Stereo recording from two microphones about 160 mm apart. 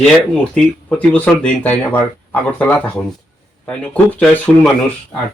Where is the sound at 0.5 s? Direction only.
5° left (ahead or behind).